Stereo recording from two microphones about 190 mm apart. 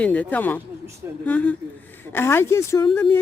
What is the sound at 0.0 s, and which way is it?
Speech, 10° left (ahead or behind).